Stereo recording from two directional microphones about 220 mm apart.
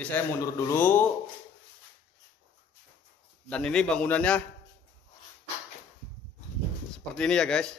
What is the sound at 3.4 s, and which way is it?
Speech, 5° left (ahead or behind).